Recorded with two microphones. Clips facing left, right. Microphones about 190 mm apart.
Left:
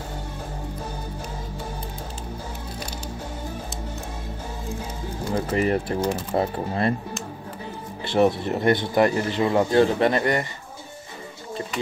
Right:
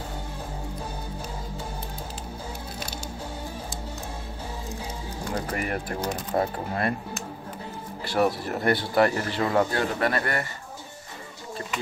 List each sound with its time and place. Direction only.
5.5 s speech: 25° left (ahead or behind)
8.0 s speech: 25° left (ahead or behind)